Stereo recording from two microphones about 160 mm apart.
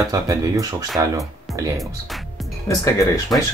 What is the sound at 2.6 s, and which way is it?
Speech, 20° left (ahead or behind).